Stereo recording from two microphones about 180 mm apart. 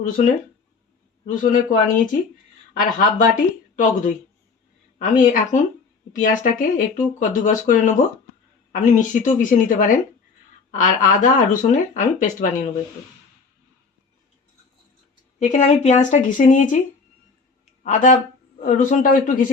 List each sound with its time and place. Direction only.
0.0 s speech: 45° left (ahead or behind)
2.7 s speech: 50° left (ahead or behind)
5.2 s speech: 45° left (ahead or behind)
15.4 s speech: 40° left (ahead or behind)
17.8 s speech: 45° left (ahead or behind)